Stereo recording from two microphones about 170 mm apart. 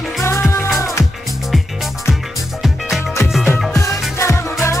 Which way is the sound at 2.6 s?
Centre (ahead or behind).